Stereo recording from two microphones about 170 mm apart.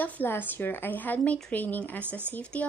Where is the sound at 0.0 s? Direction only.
10° left (ahead or behind).